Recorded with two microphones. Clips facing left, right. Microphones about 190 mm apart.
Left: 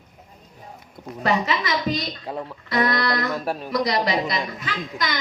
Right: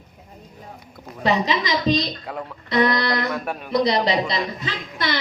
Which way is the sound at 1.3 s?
20° right (ahead or behind).